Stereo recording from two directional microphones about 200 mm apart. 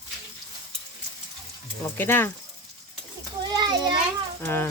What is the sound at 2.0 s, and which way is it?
Speech, 10° left (ahead or behind).